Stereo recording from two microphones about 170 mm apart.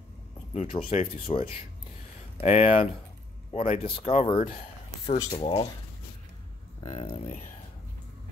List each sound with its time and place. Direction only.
0.5 s speech: 40° left (ahead or behind)
4.4 s a sound: 50° left (ahead or behind)
5.4 s speech: 35° left (ahead or behind)
6.8 s speech: 30° left (ahead or behind)